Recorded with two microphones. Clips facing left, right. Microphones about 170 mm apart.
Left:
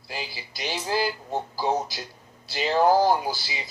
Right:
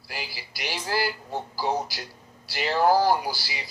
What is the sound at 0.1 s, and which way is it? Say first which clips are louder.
Speech: left 2 dB; 20° left (ahead or behind).